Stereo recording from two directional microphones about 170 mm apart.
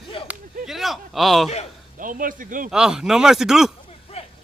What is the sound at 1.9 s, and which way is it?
Speech, 50° right (ahead or behind).